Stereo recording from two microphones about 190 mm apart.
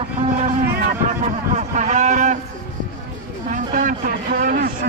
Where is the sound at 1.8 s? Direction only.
40° right (ahead or behind).